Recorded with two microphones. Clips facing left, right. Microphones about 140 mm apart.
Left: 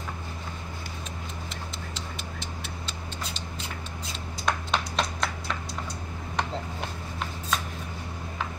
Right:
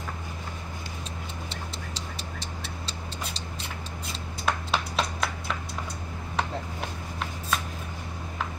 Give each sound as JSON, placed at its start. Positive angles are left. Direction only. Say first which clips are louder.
{"t": 1.5, "sound": "tick-tock", "louder": "even", "side_deg": -35}
{"t": 4.5, "sound": "a sound", "louder": "even", "side_deg": -5}
{"t": 6.3, "sound": "chopping", "louder": "even", "side_deg": 0}